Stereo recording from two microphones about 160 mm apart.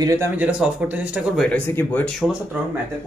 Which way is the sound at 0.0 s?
20° right (ahead or behind).